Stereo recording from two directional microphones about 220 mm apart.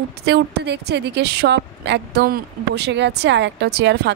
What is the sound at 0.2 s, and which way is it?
A woman's voice, 50° right (ahead or behind).